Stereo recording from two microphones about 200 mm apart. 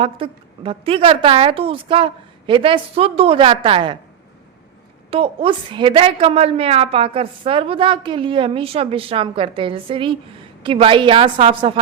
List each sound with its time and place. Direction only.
0.0 s a woman's voice: 25° right (ahead or behind)
5.1 s a woman's voice: 25° right (ahead or behind)